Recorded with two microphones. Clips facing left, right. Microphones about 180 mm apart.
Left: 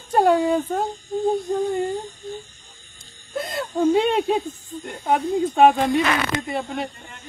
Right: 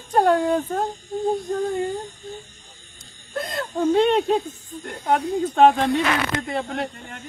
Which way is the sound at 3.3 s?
Centre (ahead or behind).